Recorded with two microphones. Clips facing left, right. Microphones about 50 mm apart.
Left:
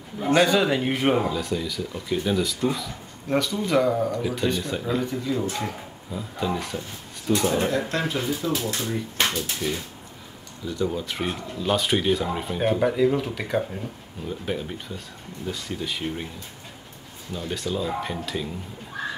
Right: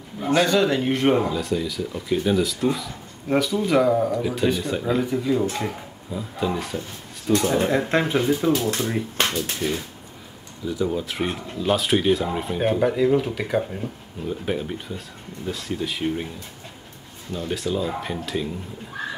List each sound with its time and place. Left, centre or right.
0.2 s speech: centre
7.9 s speech: right
8.7 s speech: centre
10.6 s speech: centre
17.3 s speech: centre